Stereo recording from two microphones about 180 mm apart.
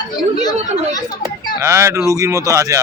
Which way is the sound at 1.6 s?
15° right (ahead or behind).